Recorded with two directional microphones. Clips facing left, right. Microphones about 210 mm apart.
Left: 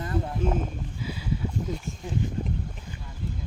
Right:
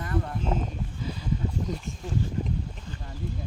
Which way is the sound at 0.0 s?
25° left (ahead or behind).